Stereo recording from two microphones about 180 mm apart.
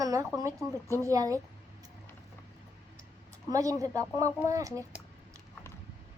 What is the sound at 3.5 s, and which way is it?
A child's voice, 20° right (ahead or behind).